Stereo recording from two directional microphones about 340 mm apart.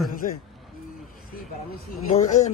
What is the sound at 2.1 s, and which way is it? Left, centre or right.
Speech, centre.